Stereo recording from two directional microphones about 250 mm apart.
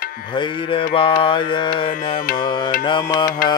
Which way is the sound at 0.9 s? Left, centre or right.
Left.